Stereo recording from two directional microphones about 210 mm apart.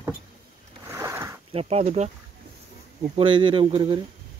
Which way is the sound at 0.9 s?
15° right (ahead or behind).